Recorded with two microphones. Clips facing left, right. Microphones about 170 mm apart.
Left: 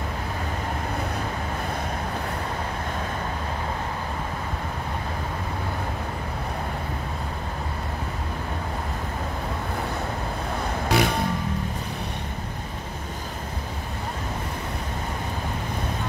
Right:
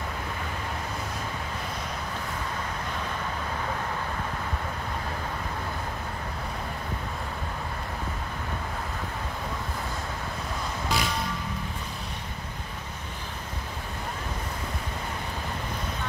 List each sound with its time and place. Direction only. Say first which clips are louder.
10.9 s music: left 7 dB; 60° left (ahead or behind)